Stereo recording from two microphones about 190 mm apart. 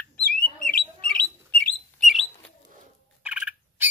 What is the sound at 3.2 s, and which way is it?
Turkey, 5° right (ahead or behind).